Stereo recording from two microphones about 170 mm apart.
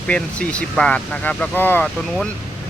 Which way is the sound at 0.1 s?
5° left (ahead or behind).